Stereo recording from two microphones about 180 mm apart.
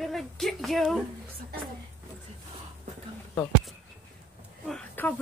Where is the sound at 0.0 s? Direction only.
Centre (ahead or behind).